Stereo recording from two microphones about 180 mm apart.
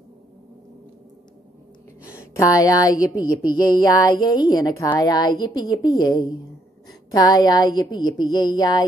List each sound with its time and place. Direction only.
2.3 s a woman's voice: 20° left (ahead or behind)